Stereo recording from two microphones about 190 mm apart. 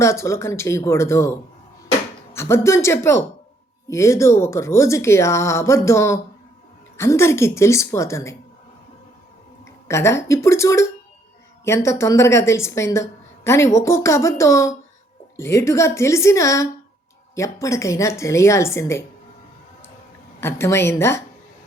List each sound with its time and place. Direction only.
0.0 s speech: 15° left (ahead or behind)
9.6 s speech: 15° left (ahead or behind)
20.4 s speech: 15° left (ahead or behind)